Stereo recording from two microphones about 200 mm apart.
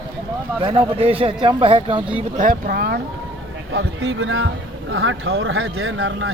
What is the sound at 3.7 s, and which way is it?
Speech, 70° right (ahead or behind).